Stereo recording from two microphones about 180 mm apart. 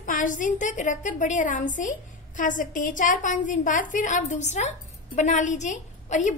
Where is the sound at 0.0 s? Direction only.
45° left (ahead or behind).